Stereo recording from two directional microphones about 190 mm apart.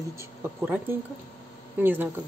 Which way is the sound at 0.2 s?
10° right (ahead or behind).